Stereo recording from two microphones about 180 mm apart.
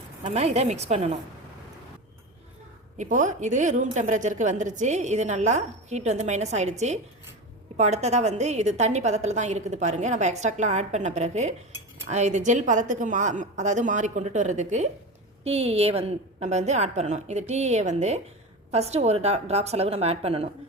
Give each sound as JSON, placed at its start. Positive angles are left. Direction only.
{"t": 0.2, "sound": "a woman's voice", "side_deg": -35}
{"t": 3.0, "sound": "a woman's voice", "side_deg": -45}